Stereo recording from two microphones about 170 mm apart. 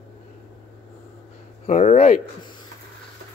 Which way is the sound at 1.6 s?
45° left (ahead or behind).